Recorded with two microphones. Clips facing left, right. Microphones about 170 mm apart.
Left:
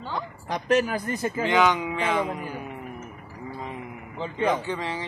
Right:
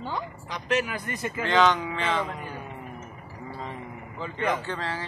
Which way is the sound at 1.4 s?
10° left (ahead or behind).